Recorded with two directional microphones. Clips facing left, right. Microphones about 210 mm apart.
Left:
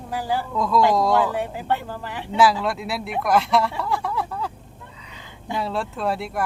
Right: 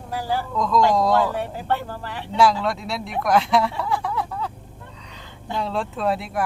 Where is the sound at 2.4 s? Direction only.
Centre (ahead or behind).